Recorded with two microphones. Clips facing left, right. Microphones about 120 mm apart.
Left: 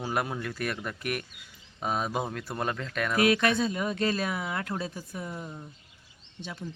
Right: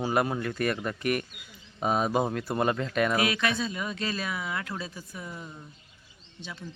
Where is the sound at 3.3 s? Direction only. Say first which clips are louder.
Left 4 dB; 50° left (ahead or behind).